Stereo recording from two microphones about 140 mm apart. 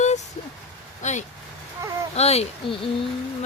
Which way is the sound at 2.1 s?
50° left (ahead or behind).